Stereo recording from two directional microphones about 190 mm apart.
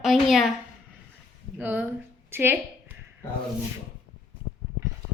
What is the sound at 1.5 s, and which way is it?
A woman's voice, 10° right (ahead or behind).